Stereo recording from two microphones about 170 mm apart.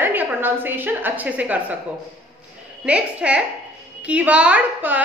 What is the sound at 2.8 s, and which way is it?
A woman's voice, 5° right (ahead or behind).